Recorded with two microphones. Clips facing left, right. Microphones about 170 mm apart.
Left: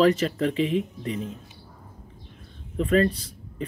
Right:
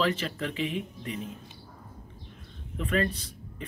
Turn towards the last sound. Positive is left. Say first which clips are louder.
# left 7 dB
turn(degrees=35)  # may be behind; listen again after turning